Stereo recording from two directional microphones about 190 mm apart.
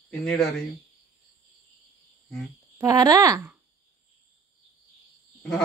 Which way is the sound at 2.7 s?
20° right (ahead or behind).